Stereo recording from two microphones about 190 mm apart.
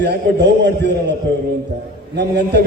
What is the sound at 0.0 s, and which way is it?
A man's voice, 65° right (ahead or behind).